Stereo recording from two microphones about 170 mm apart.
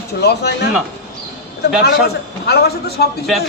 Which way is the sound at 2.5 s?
70° left (ahead or behind).